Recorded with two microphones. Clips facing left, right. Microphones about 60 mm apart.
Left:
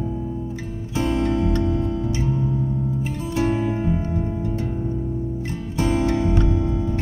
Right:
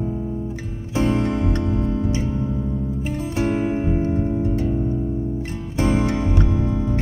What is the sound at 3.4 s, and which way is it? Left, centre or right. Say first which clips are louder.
Music: even; right.